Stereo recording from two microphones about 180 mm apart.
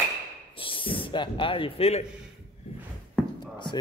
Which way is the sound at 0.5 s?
30° left (ahead or behind).